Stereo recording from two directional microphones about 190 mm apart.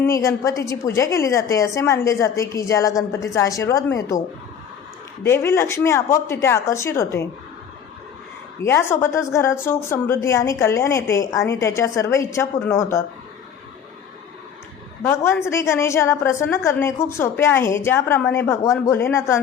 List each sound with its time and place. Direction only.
0.0 s a woman's voice: 15° left (ahead or behind)
5.2 s a woman's voice: 15° left (ahead or behind)
8.6 s a woman's voice: 15° left (ahead or behind)
15.0 s a woman's voice: 15° left (ahead or behind)